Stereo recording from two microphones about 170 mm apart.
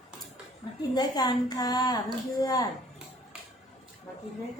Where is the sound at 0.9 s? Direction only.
25° left (ahead or behind).